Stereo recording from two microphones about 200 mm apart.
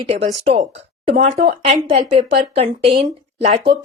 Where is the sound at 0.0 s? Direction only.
30° right (ahead or behind).